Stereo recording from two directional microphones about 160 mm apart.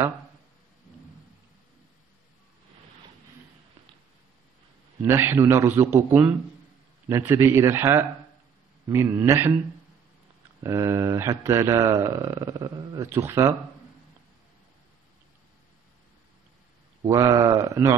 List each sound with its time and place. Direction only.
5.0 s speech: 15° right (ahead or behind)
10.6 s a man's voice: 20° right (ahead or behind)
17.0 s a man's voice: 20° right (ahead or behind)